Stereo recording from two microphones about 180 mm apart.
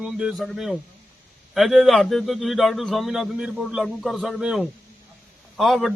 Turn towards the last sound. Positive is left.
turn(degrees=0)  # may be behind; listen again after turning